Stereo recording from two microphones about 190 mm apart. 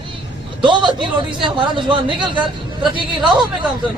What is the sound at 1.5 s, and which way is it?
A man's voice, 25° right (ahead or behind).